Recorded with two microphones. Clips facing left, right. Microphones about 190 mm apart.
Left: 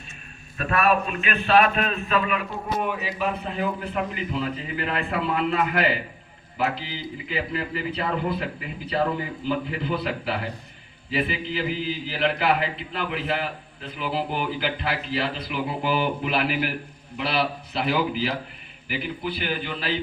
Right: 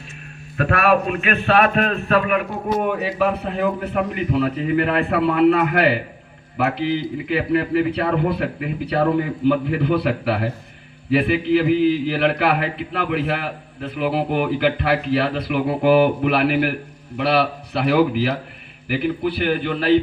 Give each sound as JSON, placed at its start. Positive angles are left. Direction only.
{"t": 0.5, "sound": "a man's voice", "side_deg": -80}